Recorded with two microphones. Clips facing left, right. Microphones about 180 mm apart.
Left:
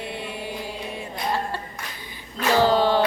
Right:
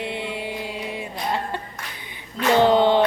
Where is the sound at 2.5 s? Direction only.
20° right (ahead or behind).